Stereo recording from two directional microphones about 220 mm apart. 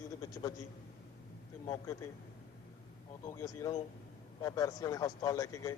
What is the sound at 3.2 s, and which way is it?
A man's voice, 15° left (ahead or behind).